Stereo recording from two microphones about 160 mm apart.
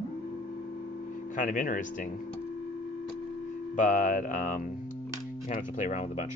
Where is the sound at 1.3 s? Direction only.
55° left (ahead or behind).